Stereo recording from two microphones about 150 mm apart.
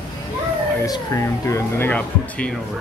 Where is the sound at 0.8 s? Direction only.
20° left (ahead or behind).